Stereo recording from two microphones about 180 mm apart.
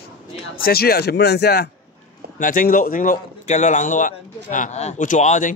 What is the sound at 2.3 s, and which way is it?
A man's voice, 50° left (ahead or behind).